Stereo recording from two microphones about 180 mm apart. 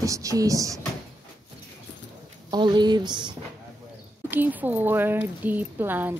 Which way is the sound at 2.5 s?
25° right (ahead or behind).